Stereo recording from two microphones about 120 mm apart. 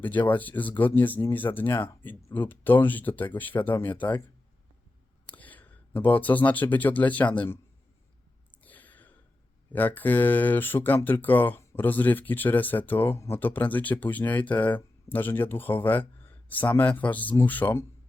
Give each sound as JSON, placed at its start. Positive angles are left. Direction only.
{"t": 0.0, "sound": "speech", "side_deg": 15}
{"t": 5.3, "sound": "speech", "side_deg": 15}
{"t": 8.6, "sound": "sigh", "side_deg": 15}
{"t": 9.7, "sound": "speech", "side_deg": 15}